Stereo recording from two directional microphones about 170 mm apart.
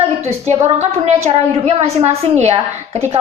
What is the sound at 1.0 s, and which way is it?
A woman's voice, 35° right (ahead or behind).